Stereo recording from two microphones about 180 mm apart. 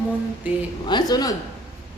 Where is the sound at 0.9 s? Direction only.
20° left (ahead or behind).